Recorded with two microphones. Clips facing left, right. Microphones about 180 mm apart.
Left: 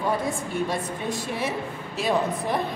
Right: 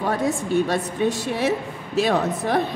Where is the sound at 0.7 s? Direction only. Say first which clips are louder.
Right 6 dB; 80° right.